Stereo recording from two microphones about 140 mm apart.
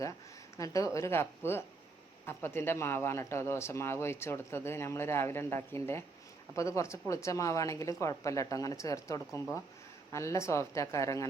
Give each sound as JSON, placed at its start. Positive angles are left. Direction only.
{"t": 0.5, "sound": "a woman's voice", "side_deg": 25}